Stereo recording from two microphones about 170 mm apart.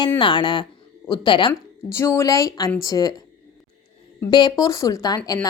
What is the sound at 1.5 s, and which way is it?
A woman's voice, 15° left (ahead or behind).